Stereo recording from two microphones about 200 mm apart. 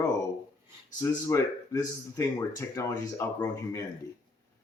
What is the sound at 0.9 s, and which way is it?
Speech, 15° left (ahead or behind).